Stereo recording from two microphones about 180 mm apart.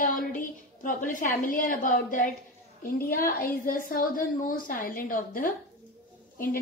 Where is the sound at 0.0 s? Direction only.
50° left (ahead or behind).